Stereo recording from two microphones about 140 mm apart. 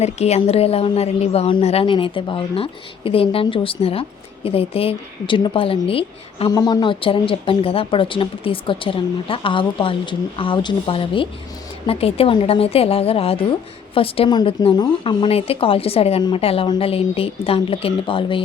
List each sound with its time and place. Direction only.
0.0 s a woman's voice: 50° left (ahead or behind)
6.5 s a woman's voice: 30° left (ahead or behind)